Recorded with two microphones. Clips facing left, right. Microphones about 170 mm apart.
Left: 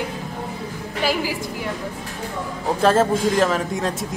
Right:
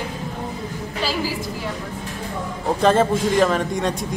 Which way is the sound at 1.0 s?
15° left (ahead or behind).